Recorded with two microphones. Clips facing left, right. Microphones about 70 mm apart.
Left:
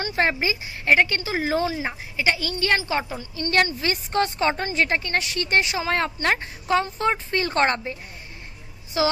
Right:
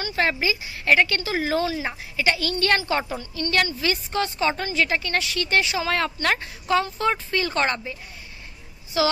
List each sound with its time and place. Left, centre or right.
0.1 s speech: left; by 3.3 s centre
3.3 s a woman's voice: left
9.0 s speech: left